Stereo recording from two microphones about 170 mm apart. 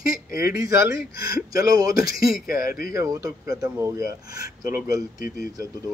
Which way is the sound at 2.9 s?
20° right (ahead or behind).